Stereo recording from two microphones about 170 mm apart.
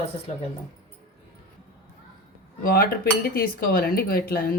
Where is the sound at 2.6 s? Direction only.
60° left (ahead or behind).